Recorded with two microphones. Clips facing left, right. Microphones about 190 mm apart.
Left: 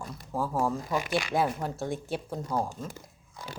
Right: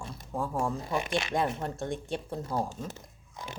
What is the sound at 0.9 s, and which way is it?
Speech, 25° right (ahead or behind).